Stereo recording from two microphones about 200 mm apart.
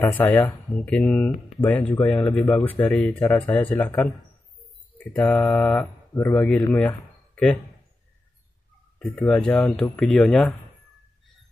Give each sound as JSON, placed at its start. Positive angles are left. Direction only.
{"t": 0.0, "sound": "speech", "side_deg": 10}
{"t": 9.0, "sound": "speech", "side_deg": 5}